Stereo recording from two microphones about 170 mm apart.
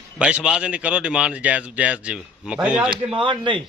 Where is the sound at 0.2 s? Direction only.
5° right (ahead or behind).